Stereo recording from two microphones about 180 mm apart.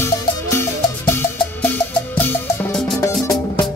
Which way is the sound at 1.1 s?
10° left (ahead or behind).